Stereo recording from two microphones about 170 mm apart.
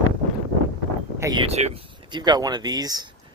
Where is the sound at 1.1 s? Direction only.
20° right (ahead or behind).